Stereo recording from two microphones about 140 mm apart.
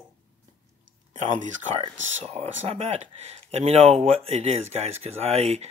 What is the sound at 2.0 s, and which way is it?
Speech, 50° right (ahead or behind).